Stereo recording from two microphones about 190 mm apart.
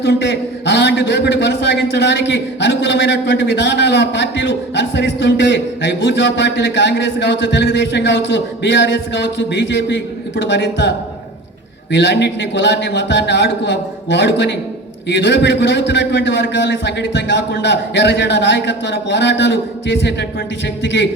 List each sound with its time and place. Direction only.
0.0 s a man's voice: 60° left (ahead or behind)